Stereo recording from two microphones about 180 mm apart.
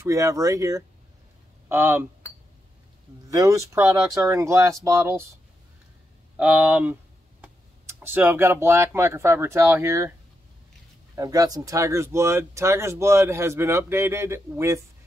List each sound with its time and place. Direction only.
0.0 s speech: 20° right (ahead or behind)
3.3 s speech: 15° right (ahead or behind)
6.3 s speech: 10° right (ahead or behind)
11.1 s speech: 20° right (ahead or behind)